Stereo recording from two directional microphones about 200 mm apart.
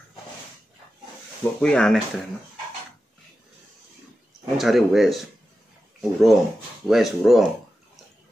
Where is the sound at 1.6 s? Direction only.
5° left (ahead or behind).